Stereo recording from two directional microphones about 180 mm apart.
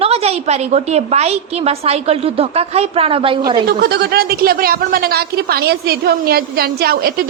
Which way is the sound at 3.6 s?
60° right (ahead or behind).